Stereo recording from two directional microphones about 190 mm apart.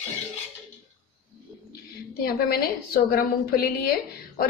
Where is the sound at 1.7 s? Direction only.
50° left (ahead or behind).